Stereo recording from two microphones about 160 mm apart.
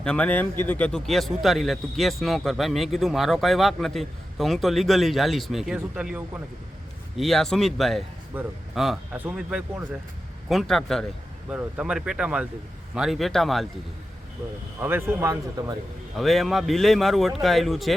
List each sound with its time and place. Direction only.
0.0 s speech: 5° left (ahead or behind); by 6.4 s 10° right (ahead or behind)
7.2 s speech: centre (ahead or behind)
14.8 s speech: 15° right (ahead or behind)
16.1 s speech: centre (ahead or behind)